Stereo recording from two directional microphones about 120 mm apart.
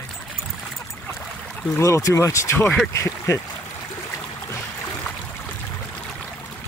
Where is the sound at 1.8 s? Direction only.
25° left (ahead or behind).